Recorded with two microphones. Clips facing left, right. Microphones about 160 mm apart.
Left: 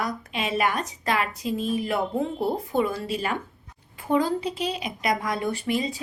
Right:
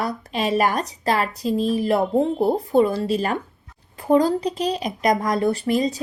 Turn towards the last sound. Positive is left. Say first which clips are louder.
# right 6 dB
turn(degrees=-40)  # may be behind; listen again after turning